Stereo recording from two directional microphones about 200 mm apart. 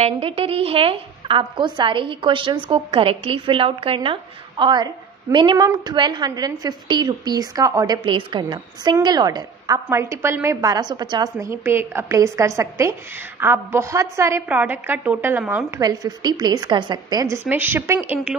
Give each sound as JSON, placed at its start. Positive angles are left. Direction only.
{"t": 0.0, "sound": "a woman's voice", "side_deg": -30}